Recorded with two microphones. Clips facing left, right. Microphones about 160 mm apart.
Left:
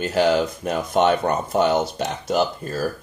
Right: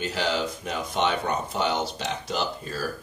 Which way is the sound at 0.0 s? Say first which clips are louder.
Left 8 dB; 50° left (ahead or behind).